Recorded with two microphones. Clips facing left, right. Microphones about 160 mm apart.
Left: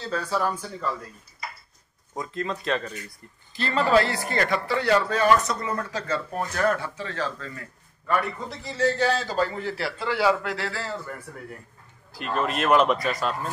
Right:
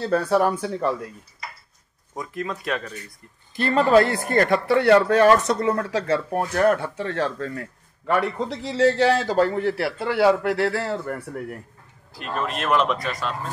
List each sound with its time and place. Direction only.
0.0 s a man's voice: 60° right (ahead or behind)
2.1 s speech: 10° right (ahead or behind)
3.5 s a man's voice: 55° right (ahead or behind)
8.1 s a man's voice: 90° right; by 11.2 s 65° right (ahead or behind)
12.1 s speech: centre (ahead or behind)